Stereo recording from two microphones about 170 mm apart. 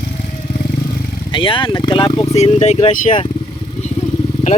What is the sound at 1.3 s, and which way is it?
Speech, 30° left (ahead or behind).